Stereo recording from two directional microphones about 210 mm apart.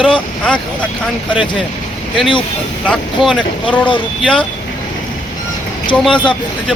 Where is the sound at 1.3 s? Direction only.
5° right (ahead or behind).